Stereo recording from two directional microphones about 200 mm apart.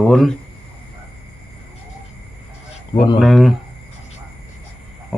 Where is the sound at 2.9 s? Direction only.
25° left (ahead or behind).